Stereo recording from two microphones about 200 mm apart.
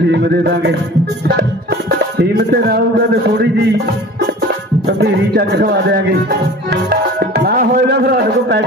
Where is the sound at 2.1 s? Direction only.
50° right (ahead or behind).